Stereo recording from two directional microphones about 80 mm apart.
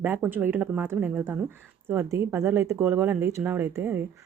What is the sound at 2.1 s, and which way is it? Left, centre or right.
A woman's voice, right.